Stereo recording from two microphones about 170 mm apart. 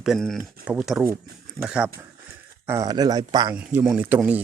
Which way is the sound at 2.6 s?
20° right (ahead or behind).